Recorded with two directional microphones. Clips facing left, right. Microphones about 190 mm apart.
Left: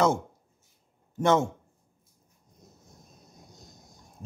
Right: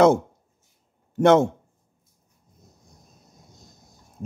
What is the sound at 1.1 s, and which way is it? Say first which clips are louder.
Speech: right 7 dB; 70° right (ahead or behind).